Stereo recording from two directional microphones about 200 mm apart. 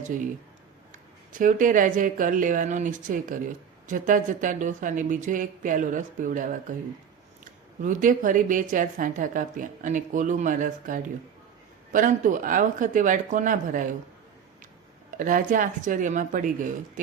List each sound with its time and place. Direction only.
0.0 s speech: 40° right (ahead or behind)
1.3 s a woman's voice: 40° right (ahead or behind)
7.8 s a woman's voice: 40° right (ahead or behind)
15.2 s a woman's voice: 40° right (ahead or behind)